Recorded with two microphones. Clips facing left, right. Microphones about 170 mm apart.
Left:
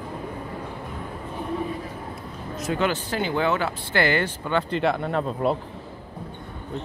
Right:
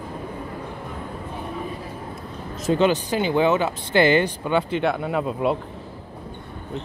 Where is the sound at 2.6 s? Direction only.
25° right (ahead or behind).